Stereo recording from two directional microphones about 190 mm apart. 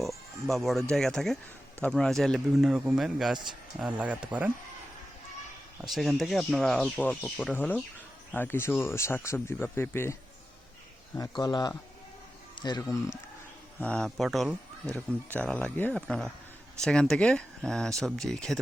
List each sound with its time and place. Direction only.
0.0 s speech: centre (ahead or behind)
5.9 s speech: centre (ahead or behind); by 13.0 s 20° left (ahead or behind)
13.7 s speech: 5° left (ahead or behind)